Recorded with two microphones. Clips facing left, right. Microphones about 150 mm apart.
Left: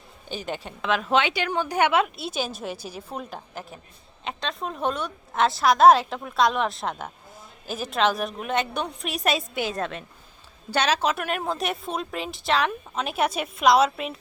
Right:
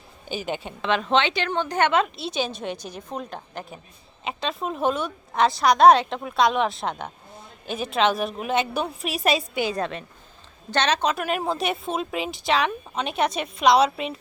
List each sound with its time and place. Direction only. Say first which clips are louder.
0.3 s a woman's voice: right 3 dB; 5° right (ahead or behind)